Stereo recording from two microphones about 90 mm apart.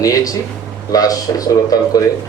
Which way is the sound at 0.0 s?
40° left (ahead or behind).